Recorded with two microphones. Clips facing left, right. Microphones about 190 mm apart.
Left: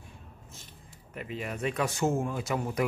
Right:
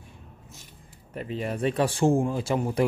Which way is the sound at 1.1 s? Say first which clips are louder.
Right 6 dB; 35° right (ahead or behind).